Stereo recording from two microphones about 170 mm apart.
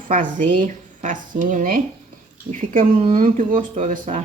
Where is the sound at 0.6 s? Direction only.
50° right (ahead or behind).